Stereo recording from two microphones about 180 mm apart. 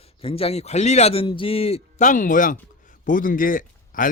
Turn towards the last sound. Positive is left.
turn(degrees=50)  # may be behind; listen again after turning